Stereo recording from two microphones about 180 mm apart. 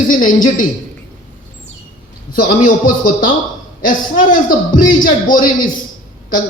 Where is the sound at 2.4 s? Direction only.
50° left (ahead or behind).